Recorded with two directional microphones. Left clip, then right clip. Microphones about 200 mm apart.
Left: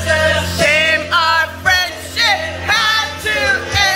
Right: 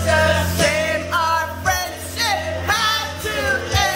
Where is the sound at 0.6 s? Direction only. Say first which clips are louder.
Left 9 dB; centre (ahead or behind).